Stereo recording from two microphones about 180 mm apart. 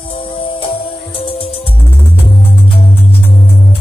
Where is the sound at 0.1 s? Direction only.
30° left (ahead or behind).